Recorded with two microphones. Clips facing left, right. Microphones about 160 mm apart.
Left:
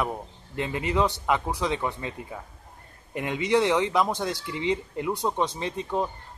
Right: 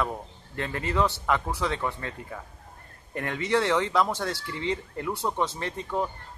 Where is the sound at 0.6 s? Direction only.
15° left (ahead or behind).